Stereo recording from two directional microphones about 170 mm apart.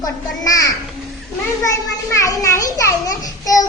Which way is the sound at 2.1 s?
20° left (ahead or behind).